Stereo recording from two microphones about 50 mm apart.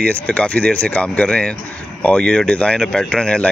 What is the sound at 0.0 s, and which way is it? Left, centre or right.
Speech, left.